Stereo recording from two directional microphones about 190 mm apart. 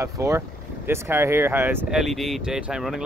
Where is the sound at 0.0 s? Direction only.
15° right (ahead or behind).